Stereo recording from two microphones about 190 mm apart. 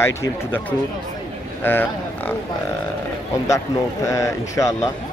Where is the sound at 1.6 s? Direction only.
10° left (ahead or behind).